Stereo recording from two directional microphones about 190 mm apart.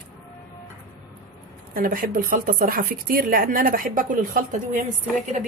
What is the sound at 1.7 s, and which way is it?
Speech, 50° right (ahead or behind).